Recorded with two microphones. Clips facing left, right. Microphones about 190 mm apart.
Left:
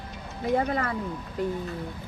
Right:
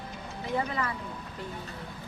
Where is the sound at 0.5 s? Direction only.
50° left (ahead or behind).